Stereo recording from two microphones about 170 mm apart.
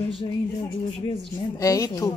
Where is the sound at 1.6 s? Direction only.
20° left (ahead or behind).